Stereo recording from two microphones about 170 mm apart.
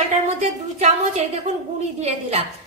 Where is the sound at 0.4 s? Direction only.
40° right (ahead or behind).